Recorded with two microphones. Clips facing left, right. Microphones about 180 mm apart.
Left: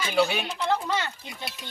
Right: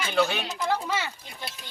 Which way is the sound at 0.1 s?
10° left (ahead or behind).